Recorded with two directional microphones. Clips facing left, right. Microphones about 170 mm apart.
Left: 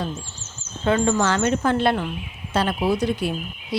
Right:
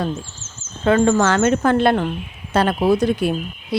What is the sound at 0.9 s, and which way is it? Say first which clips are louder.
Speech: right 5 dB; 65° right (ahead or behind).